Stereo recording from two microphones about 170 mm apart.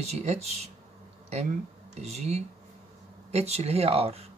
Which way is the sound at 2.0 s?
40° right (ahead or behind).